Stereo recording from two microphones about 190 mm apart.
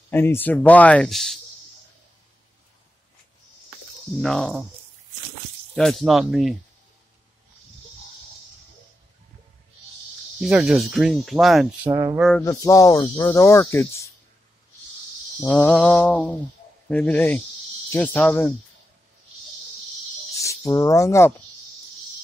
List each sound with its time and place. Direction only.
0.1 s speech: 10° left (ahead or behind)
4.2 s speech: centre (ahead or behind)
5.8 s speech: centre (ahead or behind)
10.4 s speech: centre (ahead or behind)
11.9 s a sound: 15° right (ahead or behind)
12.2 s speech: centre (ahead or behind)
12.4 s speech: 15° left (ahead or behind)
15.4 s speech: 5° left (ahead or behind)
20.3 s speech: 15° left (ahead or behind)